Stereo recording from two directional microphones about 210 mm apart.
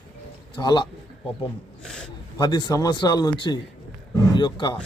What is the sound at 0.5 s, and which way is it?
Speech, 20° left (ahead or behind).